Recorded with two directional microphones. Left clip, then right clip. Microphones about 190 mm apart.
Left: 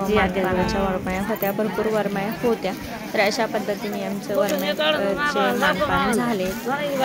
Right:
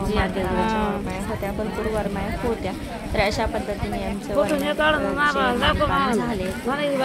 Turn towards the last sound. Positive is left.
turn(degrees=-30)  # may be behind; listen again after turning